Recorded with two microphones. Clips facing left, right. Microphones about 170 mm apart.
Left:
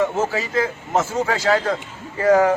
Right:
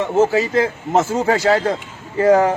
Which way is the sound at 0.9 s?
35° right (ahead or behind).